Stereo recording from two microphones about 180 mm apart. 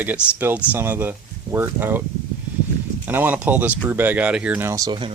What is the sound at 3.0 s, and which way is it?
Speech, 10° right (ahead or behind).